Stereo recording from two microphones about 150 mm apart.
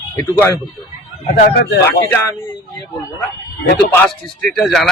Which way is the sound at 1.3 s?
80° left.